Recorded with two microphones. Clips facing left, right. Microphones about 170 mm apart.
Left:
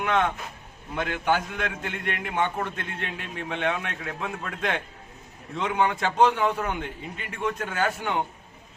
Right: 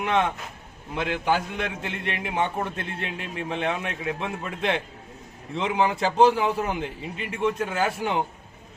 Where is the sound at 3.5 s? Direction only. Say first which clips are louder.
Even; 30° right (ahead or behind).